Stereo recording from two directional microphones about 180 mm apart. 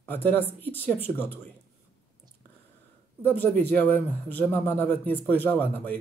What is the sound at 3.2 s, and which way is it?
Speech, 10° left (ahead or behind).